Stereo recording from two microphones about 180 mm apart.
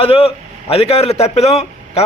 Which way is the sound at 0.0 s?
30° left (ahead or behind).